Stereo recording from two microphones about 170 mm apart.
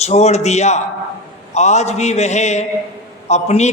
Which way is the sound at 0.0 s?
40° left (ahead or behind).